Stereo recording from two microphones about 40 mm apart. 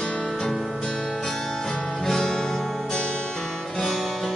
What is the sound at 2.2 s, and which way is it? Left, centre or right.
Music, left.